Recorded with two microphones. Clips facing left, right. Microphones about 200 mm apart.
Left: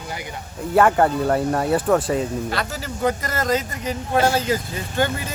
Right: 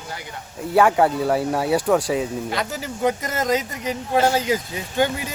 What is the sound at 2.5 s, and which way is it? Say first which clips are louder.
Speech: even; 15° right (ahead or behind).